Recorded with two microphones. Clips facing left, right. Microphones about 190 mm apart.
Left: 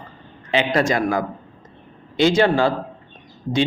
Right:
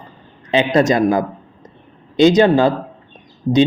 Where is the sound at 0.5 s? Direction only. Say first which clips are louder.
Right 5 dB; 20° right (ahead or behind).